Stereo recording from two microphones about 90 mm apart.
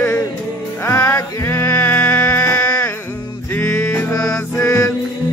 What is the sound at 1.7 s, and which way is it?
Music, 15° left (ahead or behind).